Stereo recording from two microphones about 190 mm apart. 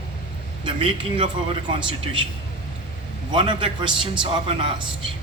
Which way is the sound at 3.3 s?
25° right (ahead or behind).